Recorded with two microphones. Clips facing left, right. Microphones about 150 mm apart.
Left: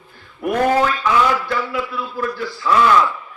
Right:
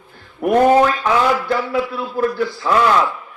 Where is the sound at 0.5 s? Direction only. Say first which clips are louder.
Right 5 dB; 25° right (ahead or behind).